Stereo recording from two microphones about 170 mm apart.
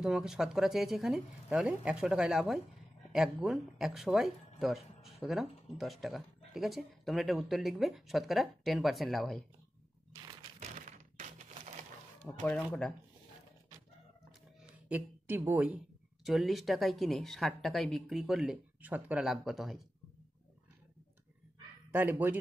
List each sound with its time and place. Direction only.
0.0 s speech: centre (ahead or behind)
10.6 s crushing: 45° right (ahead or behind)
12.4 s speech: 5° left (ahead or behind)
14.6 s music: 10° right (ahead or behind)
16.3 s speech: centre (ahead or behind)
21.9 s speech: 10° right (ahead or behind)